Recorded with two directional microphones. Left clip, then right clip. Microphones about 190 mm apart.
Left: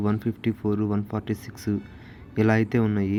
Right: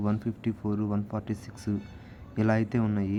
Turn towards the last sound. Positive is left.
turn(degrees=15)  # may be behind; listen again after turning